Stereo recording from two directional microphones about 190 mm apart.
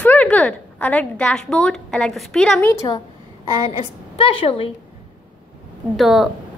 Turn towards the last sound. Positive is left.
turn(degrees=0)  # may be behind; listen again after turning